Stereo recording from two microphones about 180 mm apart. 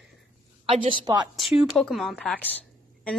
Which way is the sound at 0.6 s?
30° right (ahead or behind).